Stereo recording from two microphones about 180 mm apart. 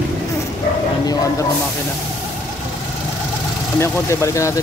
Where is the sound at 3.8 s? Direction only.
15° left (ahead or behind).